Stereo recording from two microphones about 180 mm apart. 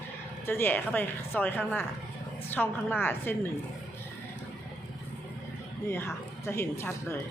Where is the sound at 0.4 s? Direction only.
10° left (ahead or behind).